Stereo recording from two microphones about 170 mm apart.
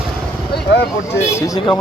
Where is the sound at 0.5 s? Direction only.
75° left (ahead or behind).